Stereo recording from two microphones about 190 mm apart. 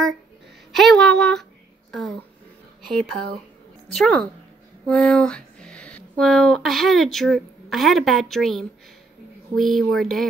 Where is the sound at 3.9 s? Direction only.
Centre (ahead or behind).